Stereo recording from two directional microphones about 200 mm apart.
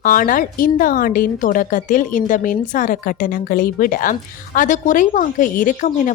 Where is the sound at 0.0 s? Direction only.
45° left (ahead or behind).